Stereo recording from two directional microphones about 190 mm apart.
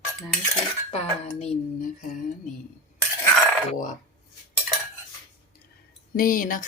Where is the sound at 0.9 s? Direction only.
35° left (ahead or behind).